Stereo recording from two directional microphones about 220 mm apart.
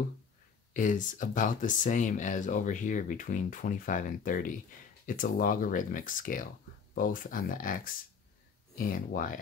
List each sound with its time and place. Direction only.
0.7 s speech: 35° left (ahead or behind)